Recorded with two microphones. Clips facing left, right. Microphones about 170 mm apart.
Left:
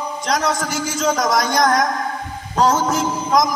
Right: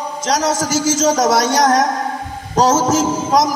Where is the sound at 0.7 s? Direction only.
90° right.